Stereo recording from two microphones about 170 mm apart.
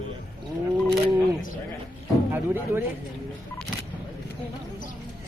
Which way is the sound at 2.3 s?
10° right (ahead or behind).